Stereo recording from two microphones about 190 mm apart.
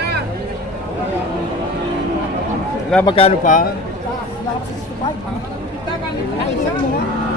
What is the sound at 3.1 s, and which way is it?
Speech, 30° left (ahead or behind).